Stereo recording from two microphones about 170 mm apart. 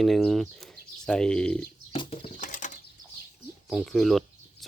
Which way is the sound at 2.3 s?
50° left (ahead or behind).